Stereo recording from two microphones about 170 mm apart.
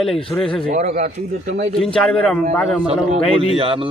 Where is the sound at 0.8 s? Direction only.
45° right (ahead or behind).